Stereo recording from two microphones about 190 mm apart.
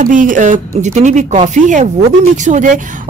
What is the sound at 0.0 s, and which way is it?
Speech, 45° right (ahead or behind).